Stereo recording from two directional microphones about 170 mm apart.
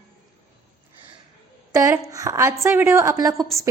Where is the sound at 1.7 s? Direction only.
20° right (ahead or behind).